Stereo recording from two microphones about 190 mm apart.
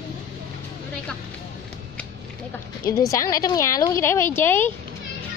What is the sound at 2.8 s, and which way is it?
A woman's voice, 15° left (ahead or behind).